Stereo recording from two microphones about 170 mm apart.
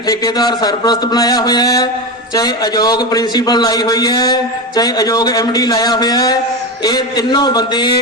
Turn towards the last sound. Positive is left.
turn(degrees=25)  # may be behind; listen again after turning